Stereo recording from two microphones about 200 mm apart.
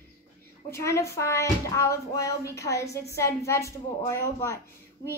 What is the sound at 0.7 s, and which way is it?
Speech, 15° left (ahead or behind).